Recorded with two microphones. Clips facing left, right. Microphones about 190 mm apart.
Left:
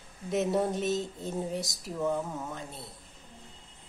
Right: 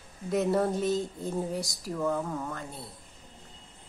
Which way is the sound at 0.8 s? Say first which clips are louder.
Right 2 dB; 20° left (ahead or behind).